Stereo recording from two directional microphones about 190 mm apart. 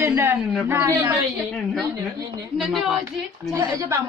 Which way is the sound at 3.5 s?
15° right (ahead or behind).